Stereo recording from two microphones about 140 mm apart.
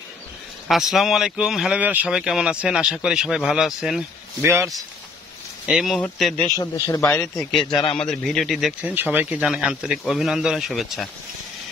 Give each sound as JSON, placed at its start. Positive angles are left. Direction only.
{"t": 0.7, "sound": "speech", "side_deg": 0}
{"t": 4.4, "sound": "speech", "side_deg": -20}
{"t": 5.7, "sound": "speech", "side_deg": -5}
{"t": 6.5, "sound": "a man's voice", "side_deg": 20}
{"t": 7.7, "sound": "a man's voice", "side_deg": 45}
{"t": 8.1, "sound": "speech", "side_deg": 0}
{"t": 8.9, "sound": "speech", "side_deg": -10}